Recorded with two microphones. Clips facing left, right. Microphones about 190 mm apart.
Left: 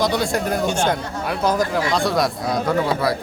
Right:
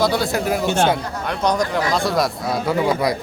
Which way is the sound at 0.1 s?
5° right (ahead or behind).